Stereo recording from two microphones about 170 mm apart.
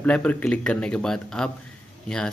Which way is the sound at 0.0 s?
10° left (ahead or behind).